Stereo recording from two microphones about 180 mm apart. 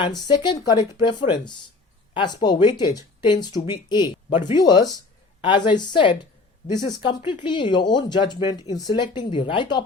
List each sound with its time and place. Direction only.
0.6 s speech: 25° left (ahead or behind)